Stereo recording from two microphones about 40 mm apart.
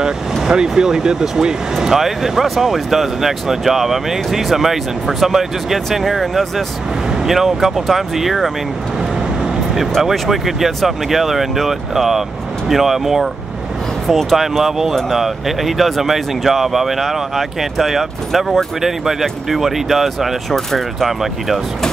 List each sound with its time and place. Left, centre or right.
0.0 s speech: centre
10.1 s speech: centre